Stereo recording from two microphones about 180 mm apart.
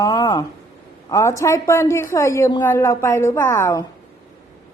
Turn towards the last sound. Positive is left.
turn(degrees=15)  # may be behind; listen again after turning